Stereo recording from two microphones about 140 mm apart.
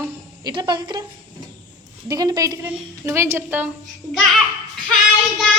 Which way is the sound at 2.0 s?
25° right (ahead or behind).